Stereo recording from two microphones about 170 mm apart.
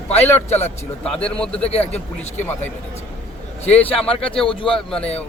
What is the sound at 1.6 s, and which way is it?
Speech, 35° left (ahead or behind).